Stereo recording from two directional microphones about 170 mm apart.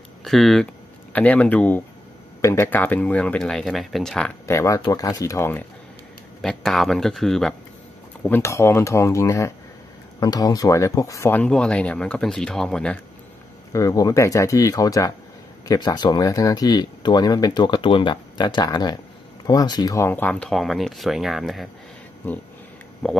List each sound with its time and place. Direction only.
0.2 s speech: centre (ahead or behind)
4.5 s speech: 15° left (ahead or behind)
6.4 s speech: centre (ahead or behind)
8.2 s speech: 15° left (ahead or behind)
13.7 s speech: 20° left (ahead or behind); by 21.6 s centre (ahead or behind)
23.0 s speech: 5° left (ahead or behind)